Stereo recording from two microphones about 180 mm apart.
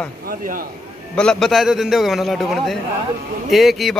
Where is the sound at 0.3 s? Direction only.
50° right (ahead or behind).